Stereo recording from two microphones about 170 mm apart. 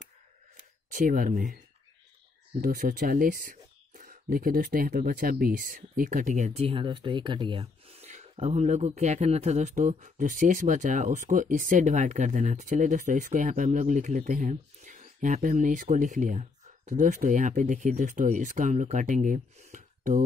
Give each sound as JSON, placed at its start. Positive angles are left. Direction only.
{"t": 0.9, "sound": "speech", "side_deg": -55}
{"t": 2.6, "sound": "speech", "side_deg": -55}